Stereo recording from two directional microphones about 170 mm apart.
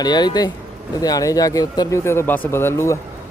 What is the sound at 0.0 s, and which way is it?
Speech, 25° left (ahead or behind).